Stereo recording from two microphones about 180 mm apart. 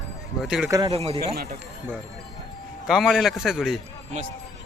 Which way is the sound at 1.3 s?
60° right (ahead or behind).